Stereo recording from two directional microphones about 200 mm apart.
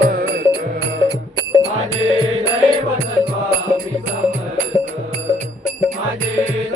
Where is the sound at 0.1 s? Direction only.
50° right (ahead or behind).